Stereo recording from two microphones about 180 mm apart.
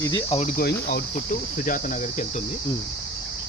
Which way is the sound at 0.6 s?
60° left (ahead or behind).